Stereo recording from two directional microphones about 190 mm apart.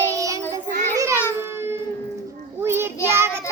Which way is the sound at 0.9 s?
15° right (ahead or behind).